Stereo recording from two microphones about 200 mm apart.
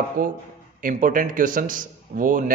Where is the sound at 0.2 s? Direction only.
45° right (ahead or behind).